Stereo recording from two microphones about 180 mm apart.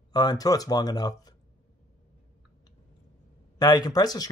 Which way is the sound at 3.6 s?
25° left (ahead or behind).